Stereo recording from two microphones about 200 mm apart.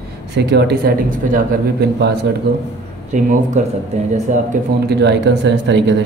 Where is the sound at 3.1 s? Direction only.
35° right (ahead or behind).